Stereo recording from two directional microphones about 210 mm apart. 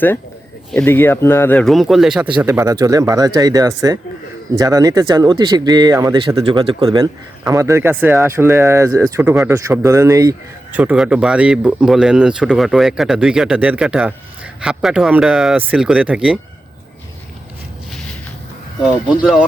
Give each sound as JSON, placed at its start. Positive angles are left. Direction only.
{"t": 0.7, "sound": "speech", "side_deg": 5}
{"t": 2.4, "sound": "speech", "side_deg": -15}